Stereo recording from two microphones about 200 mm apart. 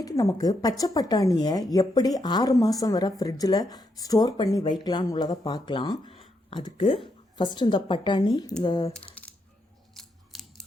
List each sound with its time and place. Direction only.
0.0 s a woman's voice: 15° left (ahead or behind)
9.2 s coin: 5° left (ahead or behind)
9.9 s scissors: centre (ahead or behind)